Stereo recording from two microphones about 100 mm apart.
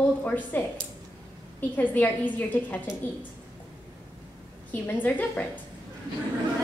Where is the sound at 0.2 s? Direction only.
15° left (ahead or behind).